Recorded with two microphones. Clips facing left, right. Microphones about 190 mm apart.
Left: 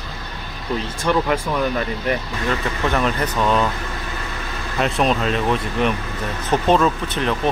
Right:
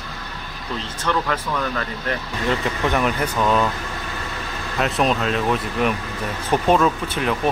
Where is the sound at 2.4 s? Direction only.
20° right (ahead or behind); by 3.7 s 5° right (ahead or behind).